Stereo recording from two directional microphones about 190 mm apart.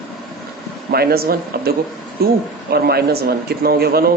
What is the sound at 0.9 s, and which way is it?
A man's voice, 55° right (ahead or behind).